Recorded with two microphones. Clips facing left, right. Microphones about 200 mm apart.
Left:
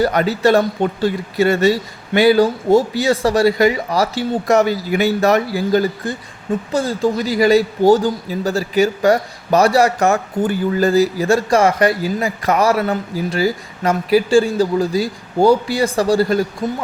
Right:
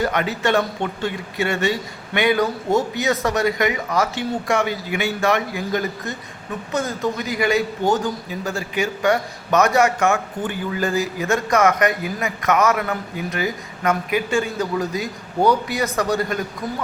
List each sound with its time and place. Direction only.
0.0 s speech: 35° left (ahead or behind)